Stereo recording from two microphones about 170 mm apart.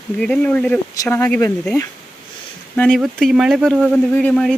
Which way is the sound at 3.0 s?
5° right (ahead or behind).